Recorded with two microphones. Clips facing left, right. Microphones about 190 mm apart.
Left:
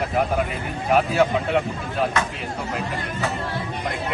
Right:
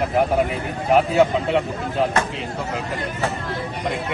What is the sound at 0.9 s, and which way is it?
Speech, 20° right (ahead or behind).